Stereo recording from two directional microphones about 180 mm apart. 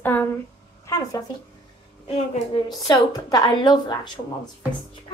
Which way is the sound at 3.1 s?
20° left (ahead or behind).